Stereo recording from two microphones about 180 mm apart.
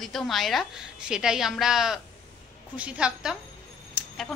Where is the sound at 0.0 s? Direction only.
Centre (ahead or behind).